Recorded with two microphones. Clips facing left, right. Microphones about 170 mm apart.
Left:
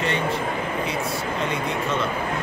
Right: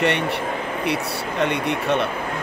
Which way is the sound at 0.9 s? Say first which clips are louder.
Right 2 dB; 70° right (ahead or behind).